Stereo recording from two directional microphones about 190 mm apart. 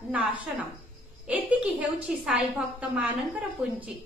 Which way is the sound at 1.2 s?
5° right (ahead or behind).